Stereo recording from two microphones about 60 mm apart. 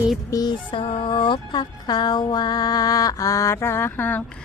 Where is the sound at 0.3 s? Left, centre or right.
Left.